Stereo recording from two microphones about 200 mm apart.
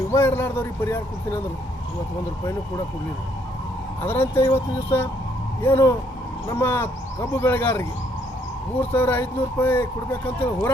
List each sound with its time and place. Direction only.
0.1 s speech: 10° left (ahead or behind)
2.4 s speech: 15° left (ahead or behind)
4.0 s speech: 10° left (ahead or behind)
8.9 s speech: 10° left (ahead or behind)